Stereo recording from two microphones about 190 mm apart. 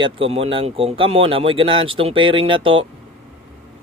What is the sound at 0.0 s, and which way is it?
Speech, 30° right (ahead or behind).